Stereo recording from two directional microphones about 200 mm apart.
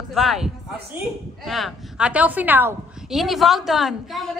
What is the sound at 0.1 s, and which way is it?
A woman's voice, centre (ahead or behind).